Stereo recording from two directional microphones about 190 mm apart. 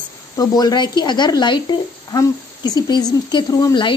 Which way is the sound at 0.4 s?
20° left (ahead or behind).